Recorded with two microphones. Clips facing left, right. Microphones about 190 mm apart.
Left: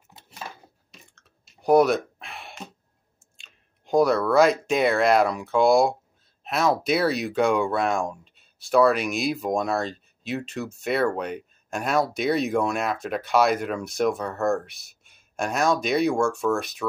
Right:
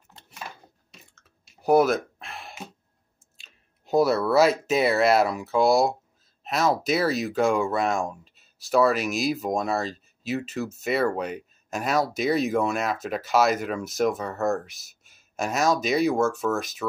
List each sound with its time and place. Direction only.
0.9 s clicking: centre (ahead or behind)
3.3 s speech: 5° right (ahead or behind)